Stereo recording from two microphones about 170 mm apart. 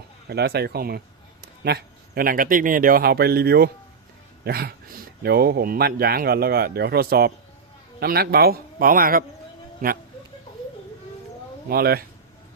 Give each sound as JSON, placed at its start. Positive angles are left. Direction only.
{"t": 0.3, "sound": "speech", "side_deg": -70}
{"t": 11.7, "sound": "speech", "side_deg": -65}